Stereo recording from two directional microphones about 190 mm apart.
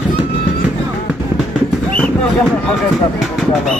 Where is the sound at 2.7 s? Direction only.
Centre (ahead or behind).